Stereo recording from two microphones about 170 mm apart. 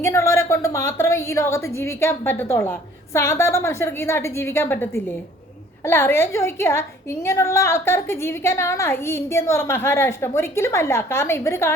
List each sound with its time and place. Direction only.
0.0 s a woman's voice: 15° left (ahead or behind)